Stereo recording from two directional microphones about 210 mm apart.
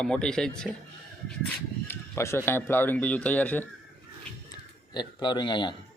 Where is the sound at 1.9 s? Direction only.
10° left (ahead or behind).